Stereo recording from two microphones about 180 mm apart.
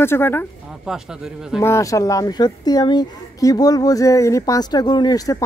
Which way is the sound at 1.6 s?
15° left (ahead or behind).